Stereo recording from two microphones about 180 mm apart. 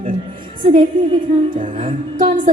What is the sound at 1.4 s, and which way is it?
Speech, 30° right (ahead or behind).